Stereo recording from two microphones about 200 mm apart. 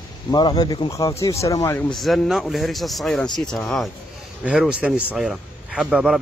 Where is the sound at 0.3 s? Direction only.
20° left (ahead or behind).